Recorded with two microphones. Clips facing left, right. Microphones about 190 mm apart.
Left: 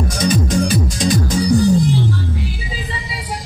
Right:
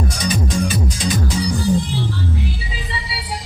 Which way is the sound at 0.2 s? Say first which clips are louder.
Left 5 dB; 45° left (ahead or behind).